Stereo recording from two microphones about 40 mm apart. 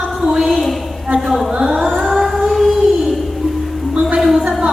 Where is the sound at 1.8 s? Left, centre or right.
Centre.